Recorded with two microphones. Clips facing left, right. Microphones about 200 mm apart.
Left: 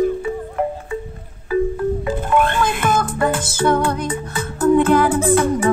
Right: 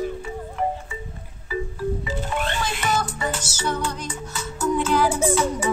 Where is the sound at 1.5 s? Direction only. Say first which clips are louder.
Left 8 dB; 55° left (ahead or behind).